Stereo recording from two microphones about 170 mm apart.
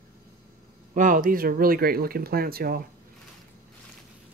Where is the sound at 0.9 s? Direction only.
50° right (ahead or behind).